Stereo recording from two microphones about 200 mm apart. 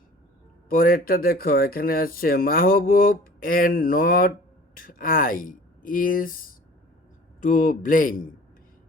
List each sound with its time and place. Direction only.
0.7 s speech: 45° left (ahead or behind)
7.4 s speech: 40° left (ahead or behind)